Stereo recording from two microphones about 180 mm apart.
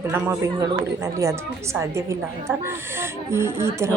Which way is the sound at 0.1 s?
15° right (ahead or behind).